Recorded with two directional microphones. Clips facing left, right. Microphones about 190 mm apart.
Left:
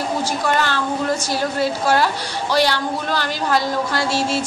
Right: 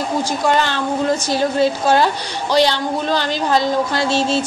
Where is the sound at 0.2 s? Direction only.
20° right (ahead or behind).